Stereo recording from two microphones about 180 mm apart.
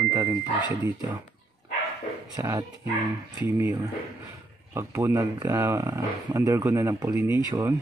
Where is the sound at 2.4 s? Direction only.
15° right (ahead or behind).